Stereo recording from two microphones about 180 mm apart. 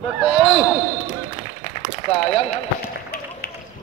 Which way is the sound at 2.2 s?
35° left (ahead or behind).